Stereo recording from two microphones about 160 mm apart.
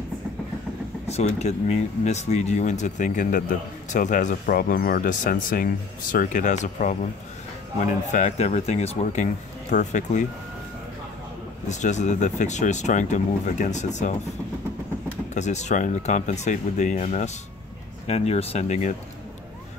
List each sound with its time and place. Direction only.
1.0 s speech: 45° left (ahead or behind)
11.7 s speech: 45° left (ahead or behind)
15.3 s speech: 45° left (ahead or behind)